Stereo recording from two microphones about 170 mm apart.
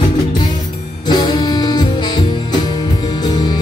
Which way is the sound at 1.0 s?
25° left (ahead or behind).